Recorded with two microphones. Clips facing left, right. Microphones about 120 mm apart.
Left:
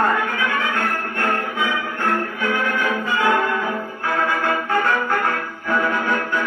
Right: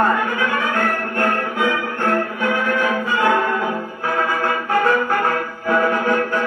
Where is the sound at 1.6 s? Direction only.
60° right (ahead or behind).